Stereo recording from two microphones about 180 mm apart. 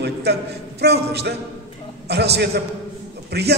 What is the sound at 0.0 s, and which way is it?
A man's voice, 65° right (ahead or behind).